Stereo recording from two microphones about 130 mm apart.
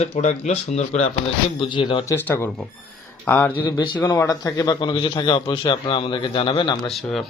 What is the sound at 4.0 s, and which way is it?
A man's voice, 25° left (ahead or behind).